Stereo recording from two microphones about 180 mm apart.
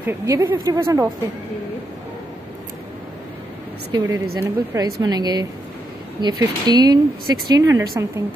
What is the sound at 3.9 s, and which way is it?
A woman's voice, 20° right (ahead or behind).